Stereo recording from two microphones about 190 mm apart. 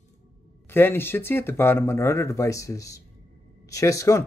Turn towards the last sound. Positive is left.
turn(degrees=15)  # may be behind; listen again after turning